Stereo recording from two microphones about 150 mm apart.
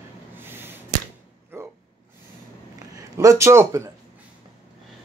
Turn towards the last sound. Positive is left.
turn(degrees=-20)  # may be behind; listen again after turning